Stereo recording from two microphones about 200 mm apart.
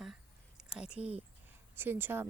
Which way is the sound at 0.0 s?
Centre (ahead or behind).